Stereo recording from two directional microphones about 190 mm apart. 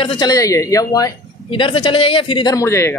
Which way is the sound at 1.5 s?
30° left (ahead or behind).